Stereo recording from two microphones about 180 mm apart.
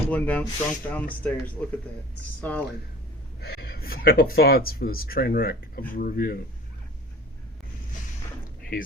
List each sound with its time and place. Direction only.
0.1 s speech: 10° left (ahead or behind)
3.4 s speech: 60° left (ahead or behind)